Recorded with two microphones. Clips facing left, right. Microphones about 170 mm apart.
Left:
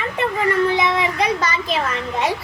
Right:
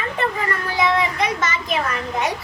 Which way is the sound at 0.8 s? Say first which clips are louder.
Even; 30° left (ahead or behind).